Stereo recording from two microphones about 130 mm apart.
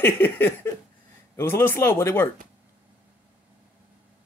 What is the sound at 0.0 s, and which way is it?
Speech, 15° left (ahead or behind).